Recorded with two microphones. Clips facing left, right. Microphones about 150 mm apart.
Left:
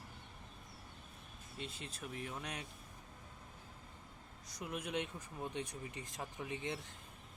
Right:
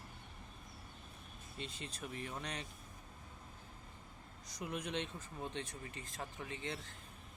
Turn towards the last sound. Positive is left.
turn(degrees=15)  # may be behind; listen again after turning